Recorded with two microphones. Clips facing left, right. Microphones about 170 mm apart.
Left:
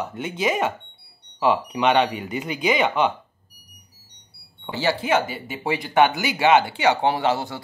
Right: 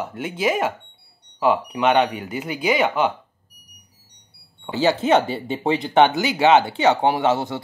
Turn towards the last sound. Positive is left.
turn(degrees=-20)  # may be behind; listen again after turning